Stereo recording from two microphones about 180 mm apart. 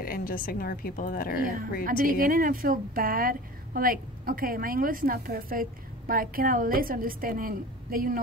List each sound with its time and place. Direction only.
0.0 s a woman's voice: 55° left (ahead or behind)
1.9 s a woman's voice: 50° right (ahead or behind)